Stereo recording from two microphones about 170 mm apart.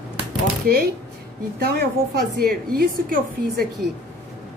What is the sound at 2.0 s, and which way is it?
A woman's voice, 60° right (ahead or behind).